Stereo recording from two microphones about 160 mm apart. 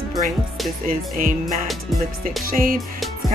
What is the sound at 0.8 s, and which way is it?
Music, 55° right (ahead or behind).